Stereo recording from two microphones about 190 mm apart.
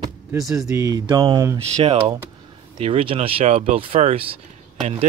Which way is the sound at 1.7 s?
30° right (ahead or behind).